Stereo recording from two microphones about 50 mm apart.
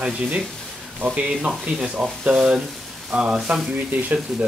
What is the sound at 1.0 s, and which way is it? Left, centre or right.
Speech, right.